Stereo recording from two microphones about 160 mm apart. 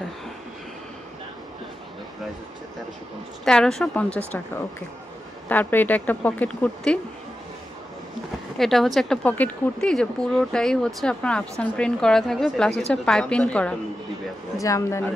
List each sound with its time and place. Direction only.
3.4 s speech: 5° left (ahead or behind)
5.5 s speech: 10° left (ahead or behind)
8.5 s speech: centre (ahead or behind)
14.6 s speech: 20° left (ahead or behind)